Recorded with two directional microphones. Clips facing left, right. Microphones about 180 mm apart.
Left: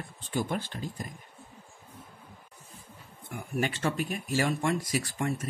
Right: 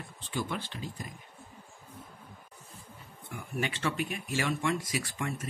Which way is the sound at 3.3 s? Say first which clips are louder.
Left 4 dB; 45° left (ahead or behind).